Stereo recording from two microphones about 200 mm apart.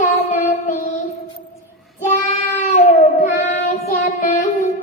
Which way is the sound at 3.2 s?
35° left (ahead or behind).